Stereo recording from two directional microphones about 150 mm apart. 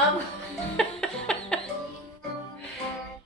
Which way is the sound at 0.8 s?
5° left (ahead or behind).